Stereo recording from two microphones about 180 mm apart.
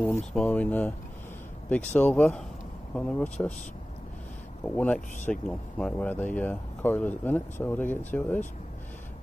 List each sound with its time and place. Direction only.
0.0 s speech: 5° left (ahead or behind)
4.6 s speech: 10° left (ahead or behind)